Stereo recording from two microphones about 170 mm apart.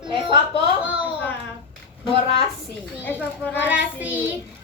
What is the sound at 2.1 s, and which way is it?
Speech, 30° right (ahead or behind).